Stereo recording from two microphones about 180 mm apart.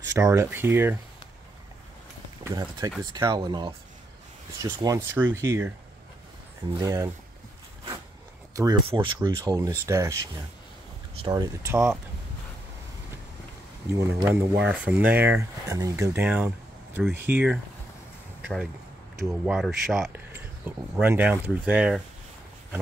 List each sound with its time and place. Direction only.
0.1 s speech: 15° right (ahead or behind)
2.4 s speech: 20° right (ahead or behind)
6.8 s speech: 20° right (ahead or behind)
8.5 s speech: 25° right (ahead or behind)
13.9 s speech: 15° right (ahead or behind)
19.4 s speech: centre (ahead or behind)